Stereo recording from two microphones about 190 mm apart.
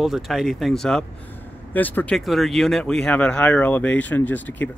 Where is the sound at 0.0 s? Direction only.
Centre (ahead or behind).